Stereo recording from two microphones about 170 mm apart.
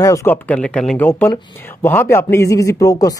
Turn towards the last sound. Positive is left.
turn(degrees=20)  # may be behind; listen again after turning